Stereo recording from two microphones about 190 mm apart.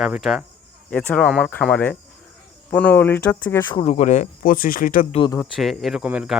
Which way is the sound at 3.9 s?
40° left (ahead or behind).